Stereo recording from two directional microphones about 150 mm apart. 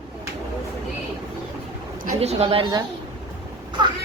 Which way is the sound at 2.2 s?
45° right (ahead or behind).